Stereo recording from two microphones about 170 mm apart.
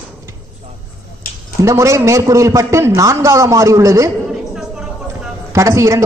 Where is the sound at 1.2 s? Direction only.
60° left (ahead or behind).